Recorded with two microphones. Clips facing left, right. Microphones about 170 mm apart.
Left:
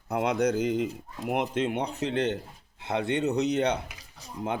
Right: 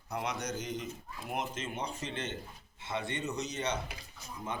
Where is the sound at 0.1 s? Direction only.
55° left (ahead or behind).